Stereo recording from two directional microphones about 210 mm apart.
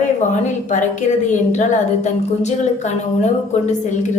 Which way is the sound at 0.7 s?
35° left (ahead or behind).